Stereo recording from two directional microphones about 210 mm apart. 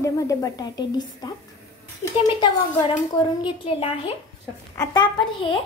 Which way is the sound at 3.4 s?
25° left (ahead or behind).